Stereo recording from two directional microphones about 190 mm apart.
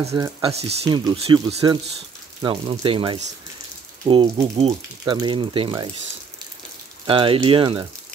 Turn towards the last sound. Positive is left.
turn(degrees=-25)  # may be behind; listen again after turning